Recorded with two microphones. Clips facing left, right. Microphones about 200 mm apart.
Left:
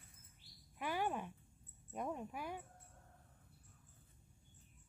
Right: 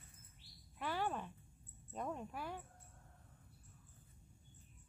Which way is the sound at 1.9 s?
10° left (ahead or behind).